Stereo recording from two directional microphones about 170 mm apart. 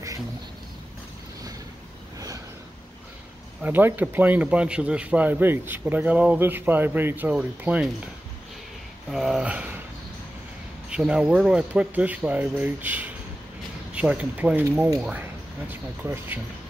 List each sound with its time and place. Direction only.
2.1 s a sound: 20° right (ahead or behind)
3.6 s speech: 10° right (ahead or behind)
9.1 s speech: 5° right (ahead or behind)
10.9 s speech: 5° right (ahead or behind)